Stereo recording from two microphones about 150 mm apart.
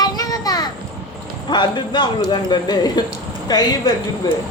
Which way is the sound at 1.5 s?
30° left (ahead or behind).